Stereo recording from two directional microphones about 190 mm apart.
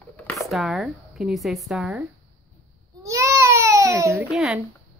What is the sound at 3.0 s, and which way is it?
Baby cry, 15° right (ahead or behind).